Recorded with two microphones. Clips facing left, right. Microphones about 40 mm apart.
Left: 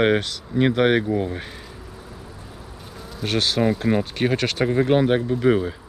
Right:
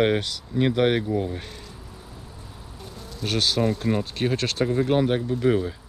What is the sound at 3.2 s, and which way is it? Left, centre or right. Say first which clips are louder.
Speech: left 2 dB; centre.